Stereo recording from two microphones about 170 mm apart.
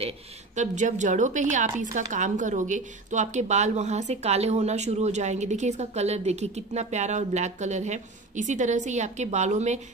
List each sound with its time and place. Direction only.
0.6 s a woman's voice: 45° right (ahead or behind)